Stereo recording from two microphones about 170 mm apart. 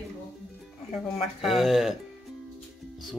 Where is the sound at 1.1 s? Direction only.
Centre (ahead or behind).